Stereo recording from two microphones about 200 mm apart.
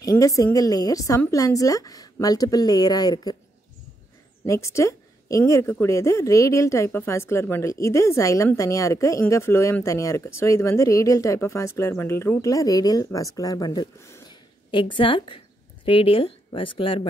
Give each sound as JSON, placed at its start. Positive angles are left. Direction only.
{"t": 0.0, "sound": "a woman's voice", "side_deg": 15}
{"t": 4.5, "sound": "a woman's voice", "side_deg": 15}